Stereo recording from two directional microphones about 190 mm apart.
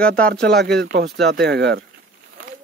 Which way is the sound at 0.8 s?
60° right (ahead or behind).